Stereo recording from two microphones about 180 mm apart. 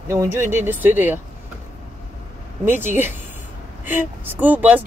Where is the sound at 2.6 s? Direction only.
10° right (ahead or behind).